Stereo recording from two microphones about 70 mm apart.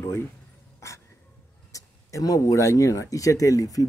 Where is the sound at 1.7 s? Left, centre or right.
Left.